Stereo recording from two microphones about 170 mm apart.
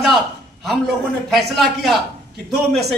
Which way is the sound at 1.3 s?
Centre (ahead or behind).